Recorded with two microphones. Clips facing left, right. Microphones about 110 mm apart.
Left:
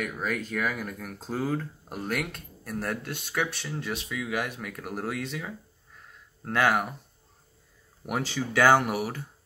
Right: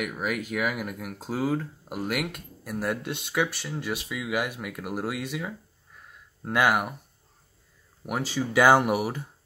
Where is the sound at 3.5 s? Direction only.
5° right (ahead or behind).